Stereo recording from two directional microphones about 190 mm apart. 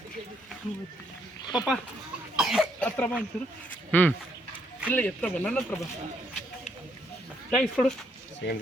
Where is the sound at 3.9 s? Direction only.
10° left (ahead or behind).